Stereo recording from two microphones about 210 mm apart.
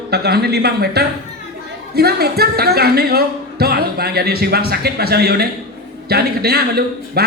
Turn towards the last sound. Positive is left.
turn(degrees=-50)  # may be behind; listen again after turning